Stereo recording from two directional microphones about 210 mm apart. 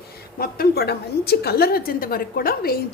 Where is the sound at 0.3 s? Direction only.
45° left (ahead or behind).